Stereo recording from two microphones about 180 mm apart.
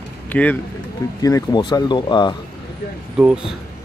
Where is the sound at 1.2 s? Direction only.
20° left (ahead or behind).